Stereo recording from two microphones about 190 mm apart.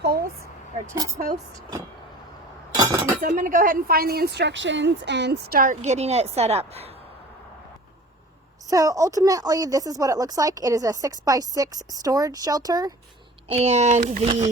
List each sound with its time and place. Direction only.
0.0 s a sound: 55° right (ahead or behind)
0.9 s a woman's voice: 15° right (ahead or behind)
2.7 s chink: 20° right (ahead or behind)
3.2 s a woman's voice: 45° right (ahead or behind)
8.6 s speech: 20° right (ahead or behind)
13.5 s speech: 35° right (ahead or behind)